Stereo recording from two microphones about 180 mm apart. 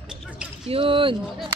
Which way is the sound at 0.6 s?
30° right (ahead or behind).